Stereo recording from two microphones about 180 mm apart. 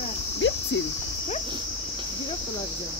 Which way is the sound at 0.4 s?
80° left.